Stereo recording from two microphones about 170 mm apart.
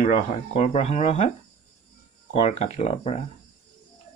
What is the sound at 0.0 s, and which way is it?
Speech, 40° left (ahead or behind).